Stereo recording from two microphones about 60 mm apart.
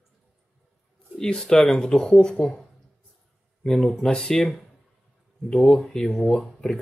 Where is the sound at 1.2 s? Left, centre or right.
Centre.